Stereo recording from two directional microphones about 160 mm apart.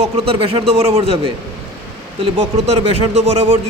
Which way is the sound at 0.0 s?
35° right (ahead or behind).